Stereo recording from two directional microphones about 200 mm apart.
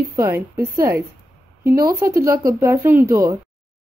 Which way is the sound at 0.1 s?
15° right (ahead or behind).